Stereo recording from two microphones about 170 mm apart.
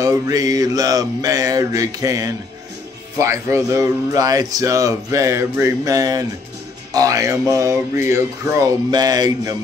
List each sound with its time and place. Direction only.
0.0 s speech: 20° right (ahead or behind)